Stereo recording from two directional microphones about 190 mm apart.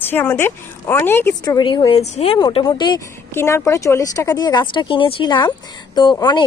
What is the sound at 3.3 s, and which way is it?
Speech, 15° left (ahead or behind).